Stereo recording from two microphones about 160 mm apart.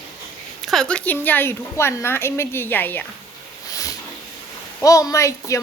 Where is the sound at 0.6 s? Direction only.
5° left (ahead or behind).